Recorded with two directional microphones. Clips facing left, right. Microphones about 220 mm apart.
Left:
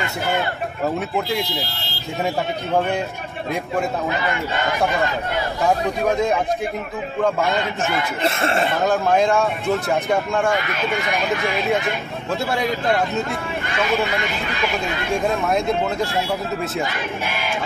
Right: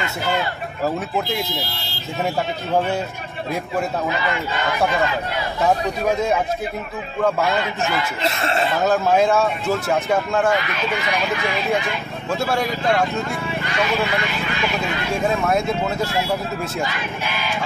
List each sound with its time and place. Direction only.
7.8 s speech: 50° left (ahead or behind)
8.8 s speech: 5° right (ahead or behind)
12.3 s speech: centre (ahead or behind)